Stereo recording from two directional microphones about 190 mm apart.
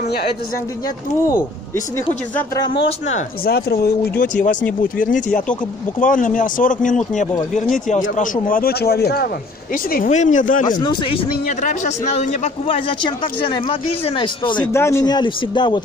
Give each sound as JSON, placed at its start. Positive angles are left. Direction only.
{"t": 2.3, "sound": "speech", "side_deg": 20}
{"t": 3.4, "sound": "speech", "side_deg": 55}
{"t": 9.8, "sound": "speech", "side_deg": 45}
{"t": 10.8, "sound": "speech", "side_deg": 25}
{"t": 14.7, "sound": "speech", "side_deg": 15}